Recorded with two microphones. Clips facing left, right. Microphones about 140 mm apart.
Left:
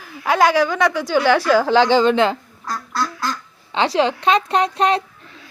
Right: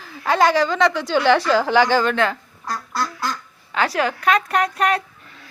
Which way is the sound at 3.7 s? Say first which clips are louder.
Left 3 dB; 25° left (ahead or behind).